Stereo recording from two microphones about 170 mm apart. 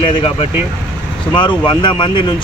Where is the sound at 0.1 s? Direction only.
30° left (ahead or behind).